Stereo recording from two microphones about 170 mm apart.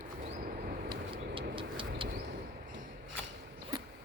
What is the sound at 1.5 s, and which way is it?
Bird, 30° right (ahead or behind).